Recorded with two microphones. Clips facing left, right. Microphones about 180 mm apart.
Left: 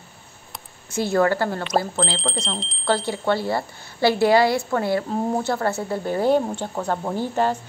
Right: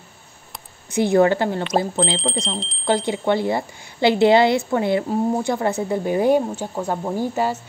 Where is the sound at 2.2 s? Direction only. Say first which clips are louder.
Right 3 dB; centre (ahead or behind).